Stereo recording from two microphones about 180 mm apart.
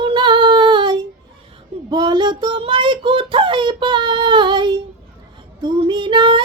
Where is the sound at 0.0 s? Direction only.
25° right (ahead or behind).